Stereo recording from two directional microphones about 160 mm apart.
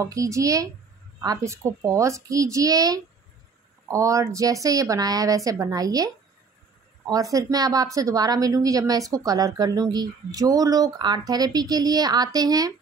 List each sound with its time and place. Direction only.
0.0 s speech: 20° right (ahead or behind)
7.1 s speech: 20° right (ahead or behind)